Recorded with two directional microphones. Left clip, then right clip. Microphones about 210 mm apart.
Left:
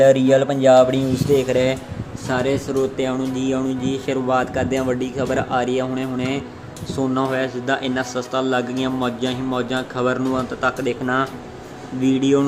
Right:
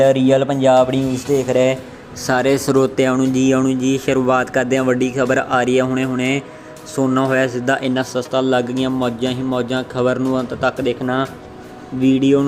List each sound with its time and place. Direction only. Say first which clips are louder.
0.0 s speech: even; centre (ahead or behind)
2.2 s speech: right 5 dB; 35° right (ahead or behind); by 12.5 s 10° right (ahead or behind)